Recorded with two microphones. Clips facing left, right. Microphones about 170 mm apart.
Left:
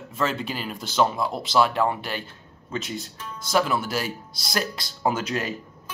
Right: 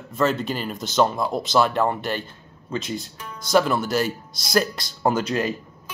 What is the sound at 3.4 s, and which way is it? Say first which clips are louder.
Speech: right 4 dB; centre (ahead or behind).